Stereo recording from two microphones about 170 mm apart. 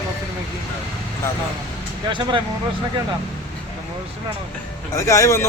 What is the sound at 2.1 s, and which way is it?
Speech, 30° right (ahead or behind).